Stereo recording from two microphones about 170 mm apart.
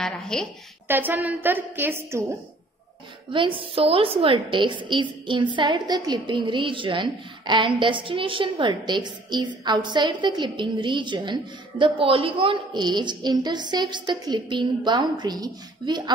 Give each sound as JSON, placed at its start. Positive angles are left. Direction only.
{"t": 0.0, "sound": "a woman's voice", "side_deg": 5}
{"t": 0.8, "sound": "a woman's voice", "side_deg": -10}
{"t": 3.3, "sound": "a woman's voice", "side_deg": -30}